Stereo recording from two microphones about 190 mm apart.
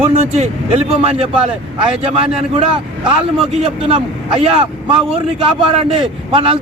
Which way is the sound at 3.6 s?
30° right (ahead or behind).